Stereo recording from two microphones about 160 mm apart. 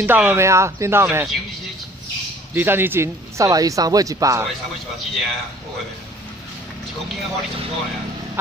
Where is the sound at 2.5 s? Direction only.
15° right (ahead or behind).